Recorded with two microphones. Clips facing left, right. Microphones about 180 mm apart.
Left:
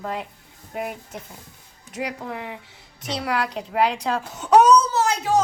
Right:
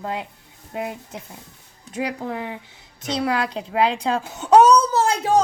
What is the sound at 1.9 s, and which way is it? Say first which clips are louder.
A woman's voice: right 3 dB; 30° right (ahead or behind).